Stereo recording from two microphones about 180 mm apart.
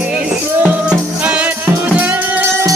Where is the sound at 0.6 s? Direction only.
5° right (ahead or behind).